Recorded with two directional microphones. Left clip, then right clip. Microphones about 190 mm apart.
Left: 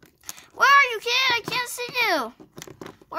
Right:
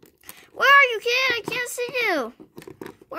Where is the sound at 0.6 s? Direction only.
5° right (ahead or behind).